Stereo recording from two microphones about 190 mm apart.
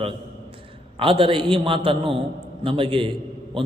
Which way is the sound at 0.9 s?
30° right (ahead or behind).